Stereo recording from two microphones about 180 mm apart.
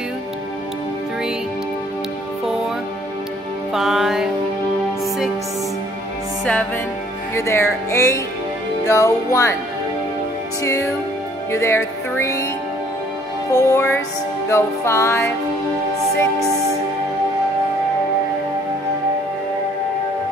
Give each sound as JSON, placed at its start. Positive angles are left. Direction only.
{"t": 3.7, "sound": "music", "side_deg": 0}
{"t": 7.3, "sound": "music", "side_deg": 15}
{"t": 10.6, "sound": "music", "side_deg": 15}
{"t": 13.5, "sound": "music", "side_deg": 15}